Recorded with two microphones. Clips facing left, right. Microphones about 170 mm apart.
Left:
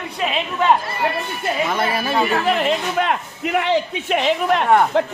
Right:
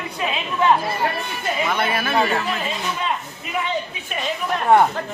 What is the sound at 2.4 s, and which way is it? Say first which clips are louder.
A man's voice: left 7 dB; 70° left (ahead or behind).